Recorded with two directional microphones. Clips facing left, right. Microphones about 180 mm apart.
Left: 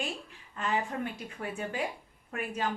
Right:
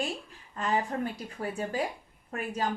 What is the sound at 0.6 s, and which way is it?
A woman's voice, 40° right (ahead or behind).